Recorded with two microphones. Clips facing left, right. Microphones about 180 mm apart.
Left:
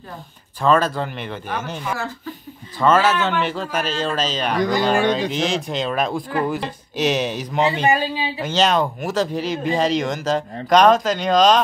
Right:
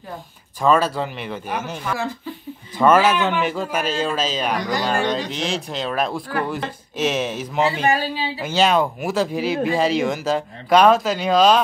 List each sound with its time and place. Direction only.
0.6 s speech: 10° right (ahead or behind)
7.8 s speech: 20° left (ahead or behind)
8.4 s speech: 10° right (ahead or behind)